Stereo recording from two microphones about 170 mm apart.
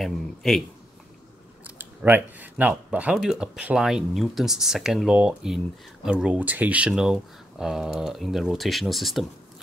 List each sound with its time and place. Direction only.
0.0 s speech: centre (ahead or behind)
1.8 s speech: 10° right (ahead or behind)